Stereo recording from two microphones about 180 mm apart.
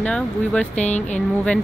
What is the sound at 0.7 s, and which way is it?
Speech, 40° left (ahead or behind).